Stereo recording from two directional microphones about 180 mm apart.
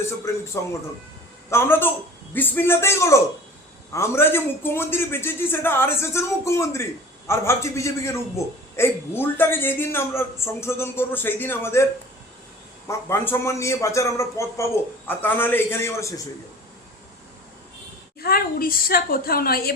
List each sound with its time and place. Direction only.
0.3 s a man's voice: 15° left (ahead or behind)
1.5 s a man's voice: 15° left (ahead or behind)
12.9 s a man's voice: 15° left (ahead or behind)
18.2 s a woman's voice: 55° left (ahead or behind)